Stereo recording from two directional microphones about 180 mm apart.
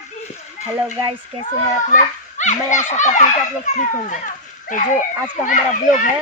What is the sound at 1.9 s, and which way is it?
A child's voice, 40° left (ahead or behind).